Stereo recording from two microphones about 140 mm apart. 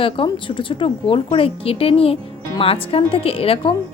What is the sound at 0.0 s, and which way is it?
A woman's voice, 40° left (ahead or behind).